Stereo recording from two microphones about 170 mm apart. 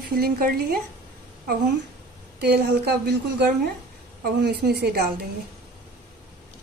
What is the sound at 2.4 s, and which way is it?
Speech, 75° right (ahead or behind).